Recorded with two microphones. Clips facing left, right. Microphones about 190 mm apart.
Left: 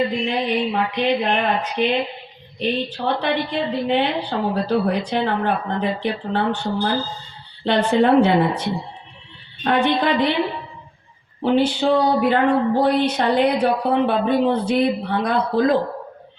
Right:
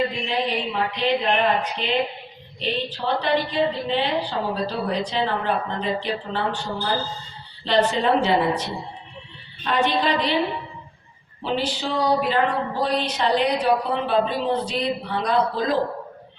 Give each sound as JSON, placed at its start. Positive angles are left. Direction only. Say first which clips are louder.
{"t": 0.3, "sound": "a woman's voice", "louder": "left 4 dB", "side_deg": 55}
{"t": 11.4, "sound": "a woman's voice", "louder": "left 8 dB", "side_deg": 55}